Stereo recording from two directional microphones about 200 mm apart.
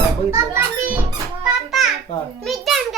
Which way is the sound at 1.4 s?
Centre (ahead or behind).